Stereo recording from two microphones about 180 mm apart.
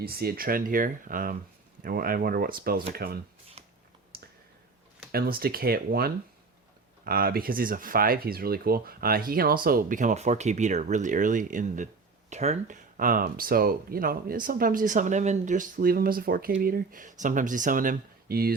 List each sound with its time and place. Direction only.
0.0 s speech: 60° right (ahead or behind)
3.6 s a sound: 35° right (ahead or behind)
4.1 s clicking: 55° right (ahead or behind)
5.1 s speech: 55° right (ahead or behind)